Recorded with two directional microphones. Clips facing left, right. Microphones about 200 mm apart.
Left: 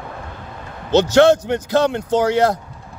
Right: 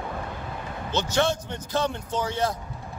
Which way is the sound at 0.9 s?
80° left.